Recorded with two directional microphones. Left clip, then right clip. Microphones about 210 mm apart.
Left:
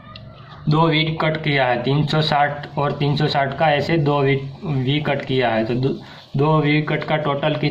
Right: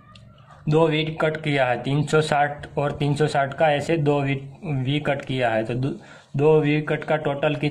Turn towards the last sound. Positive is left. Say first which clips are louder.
# left 3 dB
turn(degrees=-50)  # may be behind; listen again after turning